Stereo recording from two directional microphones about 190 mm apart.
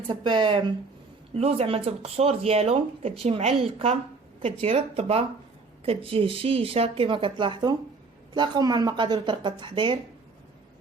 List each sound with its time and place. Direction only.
0.1 s speech: 25° right (ahead or behind)